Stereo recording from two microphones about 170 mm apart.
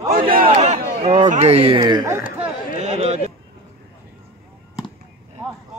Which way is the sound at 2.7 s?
40° right (ahead or behind).